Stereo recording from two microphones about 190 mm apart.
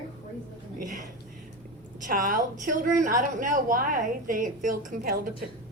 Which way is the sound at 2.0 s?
45° right (ahead or behind).